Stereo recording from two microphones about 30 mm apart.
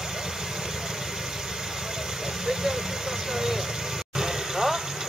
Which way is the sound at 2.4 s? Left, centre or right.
Centre.